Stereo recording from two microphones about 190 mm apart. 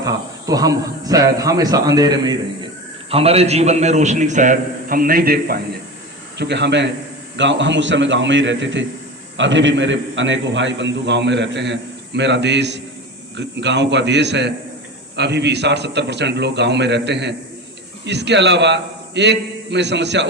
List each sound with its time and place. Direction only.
0.0 s speech: 20° right (ahead or behind)
3.1 s a man's voice: 30° right (ahead or behind); by 5.5 s 50° right (ahead or behind)
6.4 s a man's voice: 65° right (ahead or behind)